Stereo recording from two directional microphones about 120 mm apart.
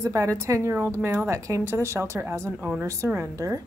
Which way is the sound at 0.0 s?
30° right (ahead or behind).